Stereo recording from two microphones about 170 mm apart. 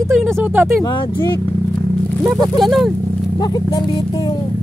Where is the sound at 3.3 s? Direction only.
25° left (ahead or behind).